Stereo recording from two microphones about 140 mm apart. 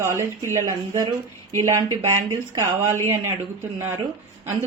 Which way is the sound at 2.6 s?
20° right (ahead or behind).